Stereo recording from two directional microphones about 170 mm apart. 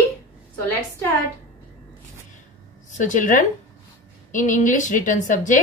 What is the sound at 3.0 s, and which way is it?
A woman's voice, 50° left (ahead or behind).